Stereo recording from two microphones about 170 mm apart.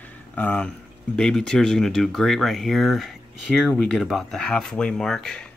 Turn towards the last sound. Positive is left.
turn(degrees=5)  # may be behind; listen again after turning